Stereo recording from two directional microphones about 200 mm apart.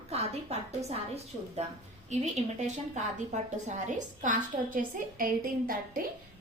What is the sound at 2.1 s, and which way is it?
A woman's voice, 35° right (ahead or behind).